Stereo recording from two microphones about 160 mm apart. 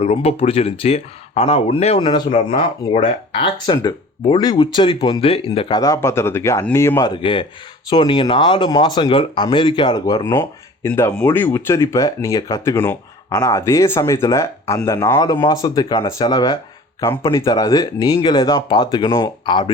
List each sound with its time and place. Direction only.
0.0 s speech: 40° left (ahead or behind)
2.0 s speech: 30° left (ahead or behind)
2.3 s speech: 45° left (ahead or behind)
3.7 s speech: 25° left (ahead or behind)
7.1 s speech: 30° left (ahead or behind)